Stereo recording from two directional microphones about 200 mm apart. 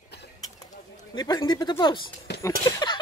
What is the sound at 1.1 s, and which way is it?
Speech, 20° left (ahead or behind).